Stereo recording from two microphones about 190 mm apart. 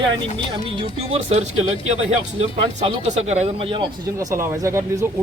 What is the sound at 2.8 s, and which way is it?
Speech, 35° right (ahead or behind).